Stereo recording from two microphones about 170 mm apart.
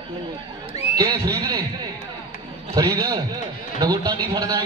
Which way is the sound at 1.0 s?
20° right (ahead or behind).